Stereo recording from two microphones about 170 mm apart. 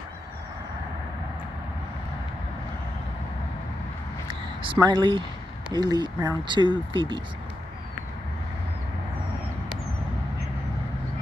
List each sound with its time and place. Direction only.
4.7 s speech: 25° right (ahead or behind)